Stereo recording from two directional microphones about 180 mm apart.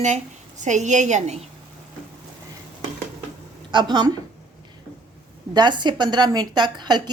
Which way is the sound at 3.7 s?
25° right (ahead or behind).